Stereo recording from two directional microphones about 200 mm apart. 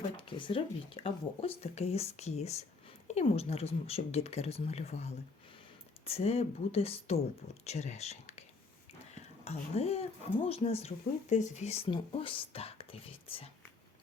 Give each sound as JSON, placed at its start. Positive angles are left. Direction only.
{"t": 0.2, "sound": "speech", "side_deg": 25}